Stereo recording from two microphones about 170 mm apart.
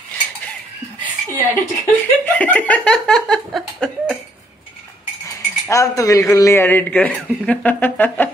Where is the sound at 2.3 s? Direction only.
10° left (ahead or behind).